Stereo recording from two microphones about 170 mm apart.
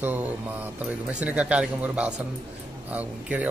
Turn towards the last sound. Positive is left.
turn(degrees=-10)  # may be behind; listen again after turning